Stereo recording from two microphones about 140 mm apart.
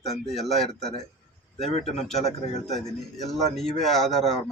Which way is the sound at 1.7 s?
55° left (ahead or behind).